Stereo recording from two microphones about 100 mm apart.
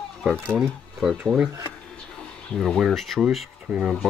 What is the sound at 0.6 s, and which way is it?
Speech, centre (ahead or behind).